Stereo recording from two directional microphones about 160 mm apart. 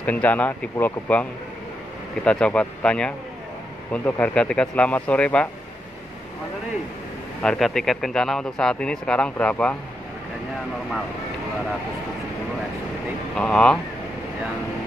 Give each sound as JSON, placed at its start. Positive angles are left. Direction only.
{"t": 0.0, "sound": "speech", "side_deg": 10}
{"t": 2.2, "sound": "speech", "side_deg": 5}
{"t": 7.4, "sound": "speech", "side_deg": 0}
{"t": 13.3, "sound": "speech", "side_deg": 5}